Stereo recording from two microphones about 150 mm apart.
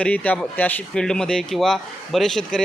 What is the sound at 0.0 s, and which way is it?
Speech, 10° left (ahead or behind).